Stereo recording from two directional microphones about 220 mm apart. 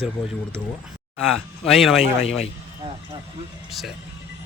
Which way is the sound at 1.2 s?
Centre (ahead or behind).